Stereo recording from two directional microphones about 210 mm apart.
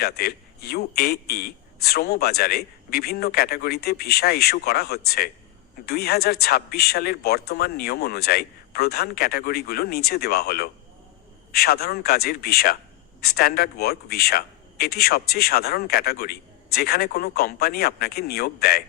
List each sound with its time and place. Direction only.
0.0 s speech: 45° left (ahead or behind)